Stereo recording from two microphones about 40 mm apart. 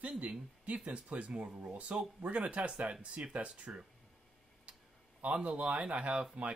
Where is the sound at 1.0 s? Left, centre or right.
Right.